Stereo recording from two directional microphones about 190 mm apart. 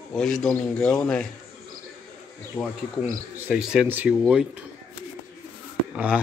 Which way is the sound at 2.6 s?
20° left (ahead or behind).